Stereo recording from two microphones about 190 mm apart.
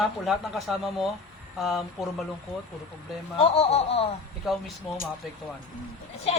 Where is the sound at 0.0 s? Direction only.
Centre (ahead or behind).